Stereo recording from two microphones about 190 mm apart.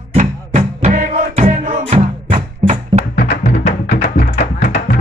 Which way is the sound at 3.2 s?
55° left (ahead or behind).